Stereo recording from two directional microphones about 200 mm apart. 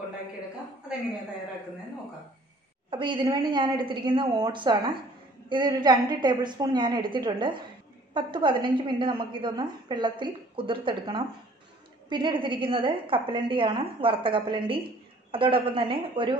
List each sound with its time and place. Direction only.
2.9 s a woman's voice: 25° right (ahead or behind)